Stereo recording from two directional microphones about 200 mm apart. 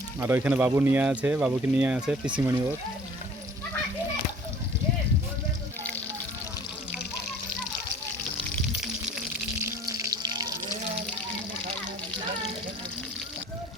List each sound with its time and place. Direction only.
0.2 s speech: 10° right (ahead or behind)
9.9 s water: 20° right (ahead or behind)